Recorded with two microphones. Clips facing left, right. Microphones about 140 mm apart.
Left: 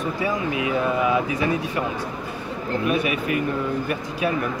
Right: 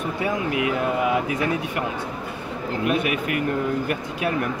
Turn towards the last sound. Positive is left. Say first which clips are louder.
# left 1 dB
turn(degrees=-70)  # may be behind; listen again after turning